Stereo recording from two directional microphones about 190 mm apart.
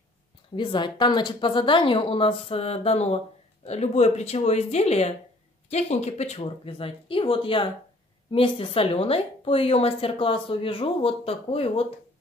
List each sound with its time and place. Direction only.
0.6 s a woman's voice: 25° left (ahead or behind)